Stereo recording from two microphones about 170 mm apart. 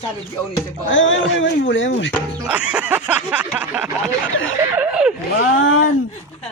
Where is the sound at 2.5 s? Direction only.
5° right (ahead or behind).